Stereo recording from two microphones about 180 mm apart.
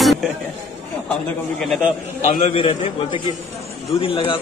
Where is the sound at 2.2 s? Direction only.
35° left (ahead or behind).